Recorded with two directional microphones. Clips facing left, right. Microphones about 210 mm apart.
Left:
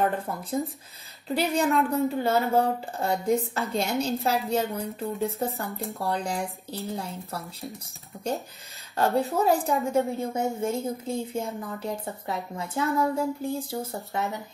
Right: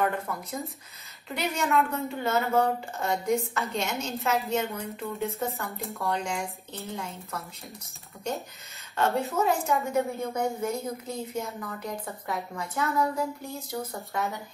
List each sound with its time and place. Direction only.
0.0 s a woman's voice: 30° left (ahead or behind)
5.7 s speech: centre (ahead or behind)
5.9 s a woman's voice: 35° left (ahead or behind)
8.9 s a woman's voice: 35° left (ahead or behind)